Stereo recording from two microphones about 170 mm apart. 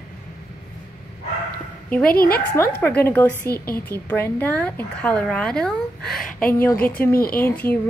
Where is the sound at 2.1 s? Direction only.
65° left (ahead or behind).